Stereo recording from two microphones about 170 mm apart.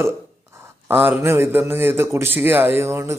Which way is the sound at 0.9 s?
10° right (ahead or behind).